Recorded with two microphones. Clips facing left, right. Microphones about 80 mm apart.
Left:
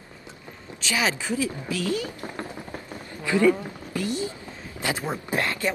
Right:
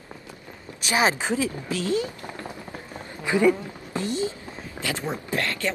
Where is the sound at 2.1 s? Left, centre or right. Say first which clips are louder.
Left 2 dB; left.